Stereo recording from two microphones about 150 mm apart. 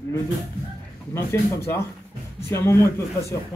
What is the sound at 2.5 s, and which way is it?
Speech, 20° left (ahead or behind).